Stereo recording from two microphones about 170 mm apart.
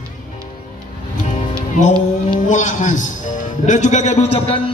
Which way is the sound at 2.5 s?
45° left (ahead or behind).